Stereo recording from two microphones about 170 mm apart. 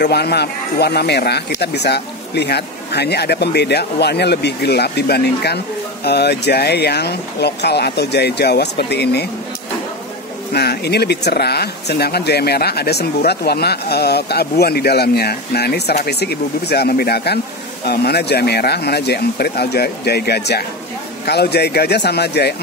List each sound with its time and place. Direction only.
0.0 s speech: 70° left (ahead or behind)
10.5 s speech: 70° left (ahead or behind)